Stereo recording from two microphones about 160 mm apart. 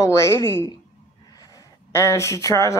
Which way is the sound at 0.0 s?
20° left (ahead or behind).